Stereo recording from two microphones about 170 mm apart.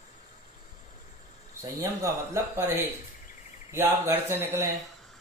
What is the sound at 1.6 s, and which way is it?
Speech, 20° right (ahead or behind).